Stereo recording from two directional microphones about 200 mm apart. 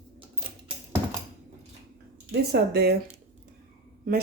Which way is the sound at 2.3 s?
55° right (ahead or behind).